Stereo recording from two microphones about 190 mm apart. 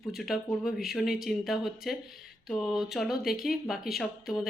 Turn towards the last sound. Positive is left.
turn(degrees=0)  # may be behind; listen again after turning